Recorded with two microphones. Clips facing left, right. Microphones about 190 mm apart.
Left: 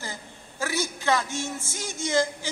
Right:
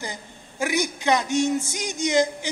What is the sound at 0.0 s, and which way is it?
A woman's voice, 15° right (ahead or behind).